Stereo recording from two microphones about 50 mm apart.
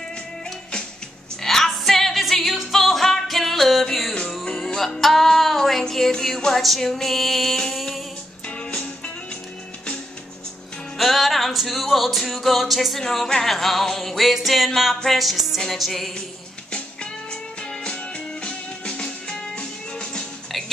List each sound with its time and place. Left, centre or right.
1.4 s music: centre
8.5 s music: left
11.0 s music: centre
16.7 s music: left